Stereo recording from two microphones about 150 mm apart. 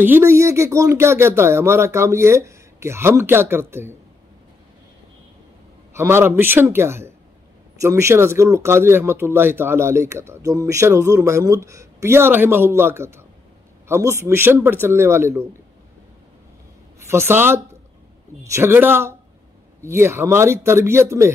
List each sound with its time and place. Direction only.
0.0 s speech: 15° right (ahead or behind)
5.9 s speech: 15° right (ahead or behind)
17.1 s speech: 15° right (ahead or behind)